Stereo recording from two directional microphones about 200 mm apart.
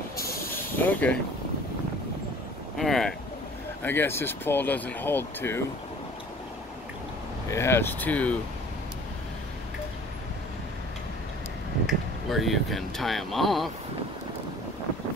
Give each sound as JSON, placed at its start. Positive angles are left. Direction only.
{"t": 0.7, "sound": "speech", "side_deg": 10}
{"t": 2.8, "sound": "speech", "side_deg": 0}
{"t": 7.5, "sound": "speech", "side_deg": 10}
{"t": 11.8, "sound": "speech", "side_deg": 0}